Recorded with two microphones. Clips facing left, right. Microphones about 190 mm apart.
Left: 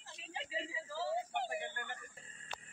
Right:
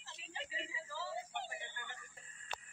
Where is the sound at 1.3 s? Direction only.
55° left (ahead or behind).